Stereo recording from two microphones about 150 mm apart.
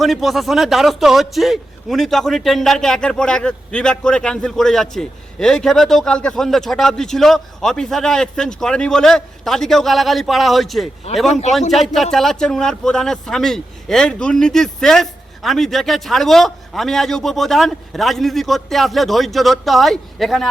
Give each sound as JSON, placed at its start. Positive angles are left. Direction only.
{"t": 0.0, "sound": "a man's voice", "side_deg": 0}
{"t": 11.3, "sound": "a man's voice", "side_deg": 50}
{"t": 12.1, "sound": "a man's voice", "side_deg": 0}